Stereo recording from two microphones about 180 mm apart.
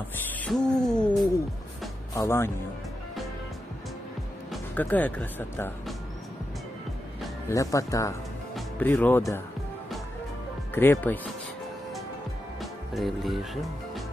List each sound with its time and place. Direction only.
0.4 s owl: 5° left (ahead or behind)
2.1 s speech: 15° left (ahead or behind)
4.5 s speech: 10° left (ahead or behind)
7.4 s speech: 20° left (ahead or behind)
8.5 s speech: 5° left (ahead or behind)
10.7 s speech: 10° left (ahead or behind)
12.5 s music: centre (ahead or behind)